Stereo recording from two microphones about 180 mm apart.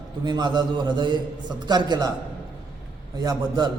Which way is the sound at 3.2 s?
20° right (ahead or behind).